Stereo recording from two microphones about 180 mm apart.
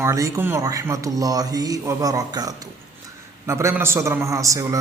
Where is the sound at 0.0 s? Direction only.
15° right (ahead or behind).